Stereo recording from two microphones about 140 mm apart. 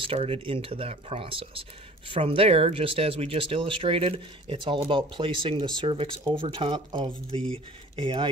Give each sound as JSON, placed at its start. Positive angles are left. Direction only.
{"t": 0.0, "sound": "speech", "side_deg": -40}